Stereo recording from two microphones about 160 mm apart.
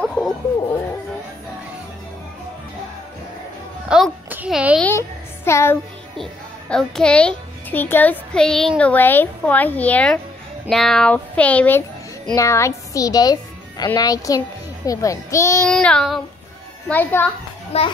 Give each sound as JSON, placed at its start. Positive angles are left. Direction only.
{"t": 0.0, "sound": "speech", "side_deg": 5}
{"t": 3.9, "sound": "a child's voice", "side_deg": -5}
{"t": 4.8, "sound": "a child's voice", "side_deg": 15}
{"t": 6.7, "sound": "a child's voice", "side_deg": 5}
{"t": 15.6, "sound": "a child's voice", "side_deg": 5}
{"t": 17.7, "sound": "a child's voice", "side_deg": 40}